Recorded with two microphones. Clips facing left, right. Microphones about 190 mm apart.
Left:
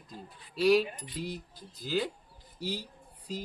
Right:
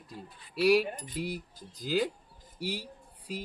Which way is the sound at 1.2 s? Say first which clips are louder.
Right 2 dB; 10° right (ahead or behind).